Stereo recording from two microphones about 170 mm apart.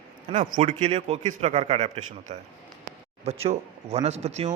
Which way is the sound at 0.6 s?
40° right (ahead or behind).